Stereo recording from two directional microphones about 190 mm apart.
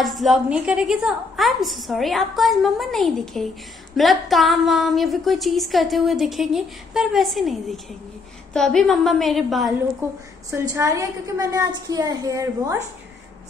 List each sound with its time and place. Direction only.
0.0 s a woman's voice: centre (ahead or behind)
10.0 s a woman's voice: 15° right (ahead or behind)